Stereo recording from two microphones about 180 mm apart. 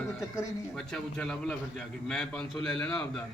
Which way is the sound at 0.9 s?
5° left (ahead or behind).